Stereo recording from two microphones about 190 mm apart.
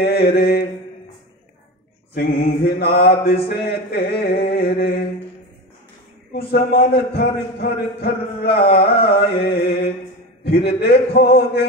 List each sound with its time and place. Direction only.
0.0 s a man's voice: 55° left (ahead or behind)
2.1 s a man's voice: 55° left (ahead or behind)
4.5 s a sound: 55° left (ahead or behind)
6.3 s a man's voice: 55° left (ahead or behind)